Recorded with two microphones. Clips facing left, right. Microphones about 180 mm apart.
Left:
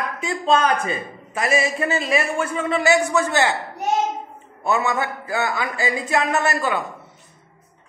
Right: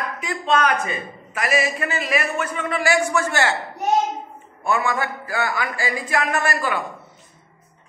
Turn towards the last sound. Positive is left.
turn(degrees=20)  # may be behind; listen again after turning